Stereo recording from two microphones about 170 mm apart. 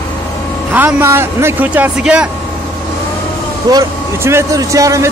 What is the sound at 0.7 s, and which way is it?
Speech, 10° right (ahead or behind).